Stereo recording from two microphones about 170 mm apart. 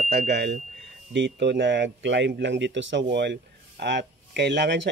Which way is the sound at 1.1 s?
90° right.